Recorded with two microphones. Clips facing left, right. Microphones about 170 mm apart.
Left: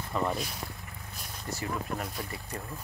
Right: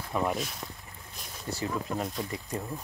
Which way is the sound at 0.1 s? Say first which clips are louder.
Right 1 dB; 5° right (ahead or behind).